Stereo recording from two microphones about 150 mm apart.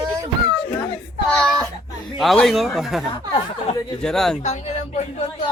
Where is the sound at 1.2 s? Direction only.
5° left (ahead or behind).